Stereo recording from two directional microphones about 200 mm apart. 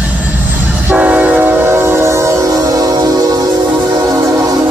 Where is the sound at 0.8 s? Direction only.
10° right (ahead or behind).